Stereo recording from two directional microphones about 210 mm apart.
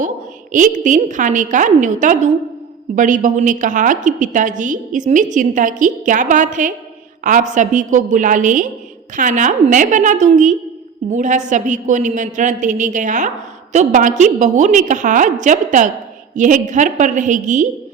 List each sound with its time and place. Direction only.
0.5 s a woman's voice: 35° right (ahead or behind)